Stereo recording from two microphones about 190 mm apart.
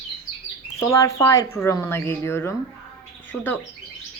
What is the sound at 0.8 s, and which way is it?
A woman's voice, 15° left (ahead or behind).